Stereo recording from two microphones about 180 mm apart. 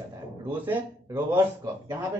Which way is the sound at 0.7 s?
15° right (ahead or behind).